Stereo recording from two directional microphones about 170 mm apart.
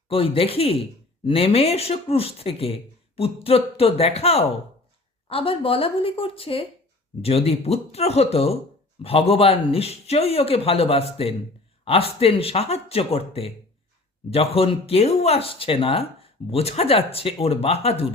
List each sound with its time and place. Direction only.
0.1 s speech: 35° left (ahead or behind)